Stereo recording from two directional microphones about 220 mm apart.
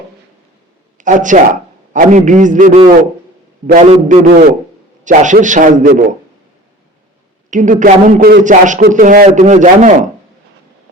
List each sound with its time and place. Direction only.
0.9 s a man's voice: 35° right (ahead or behind)
7.5 s a man's voice: 35° right (ahead or behind)